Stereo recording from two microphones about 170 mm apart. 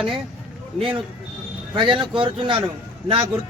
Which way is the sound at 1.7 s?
30° right (ahead or behind).